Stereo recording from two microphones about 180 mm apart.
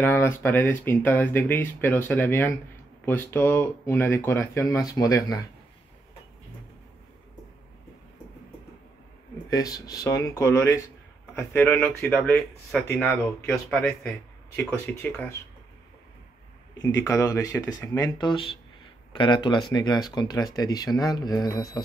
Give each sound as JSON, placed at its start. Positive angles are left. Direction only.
{"t": 0.0, "sound": "speech", "side_deg": 10}
{"t": 9.5, "sound": "speech", "side_deg": 20}
{"t": 16.7, "sound": "speech", "side_deg": 20}